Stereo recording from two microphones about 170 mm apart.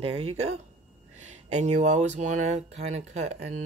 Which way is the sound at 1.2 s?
45° right (ahead or behind).